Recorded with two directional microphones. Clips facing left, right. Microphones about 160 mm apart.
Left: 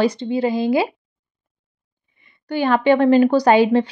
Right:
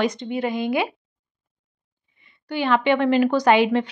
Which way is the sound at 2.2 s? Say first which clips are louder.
Left 3 dB; 45° left (ahead or behind).